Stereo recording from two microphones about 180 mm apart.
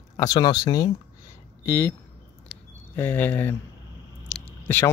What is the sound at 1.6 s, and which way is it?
Speech, 10° left (ahead or behind).